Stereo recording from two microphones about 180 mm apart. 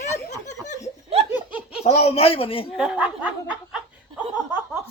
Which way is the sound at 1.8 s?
35° left (ahead or behind).